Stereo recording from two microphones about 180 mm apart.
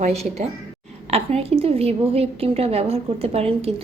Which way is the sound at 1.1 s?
35° right (ahead or behind).